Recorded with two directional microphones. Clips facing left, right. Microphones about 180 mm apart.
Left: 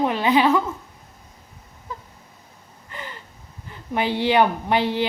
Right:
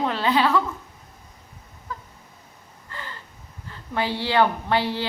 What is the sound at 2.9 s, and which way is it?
Gasp, 15° left (ahead or behind).